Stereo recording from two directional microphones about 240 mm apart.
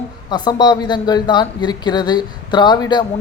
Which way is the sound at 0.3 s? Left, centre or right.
Centre.